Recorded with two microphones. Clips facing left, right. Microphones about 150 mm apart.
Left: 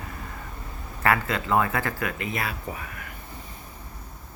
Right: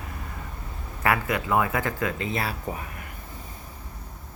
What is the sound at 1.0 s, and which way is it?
Speech, 15° right (ahead or behind).